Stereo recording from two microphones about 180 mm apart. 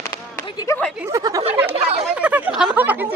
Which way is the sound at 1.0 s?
20° right (ahead or behind).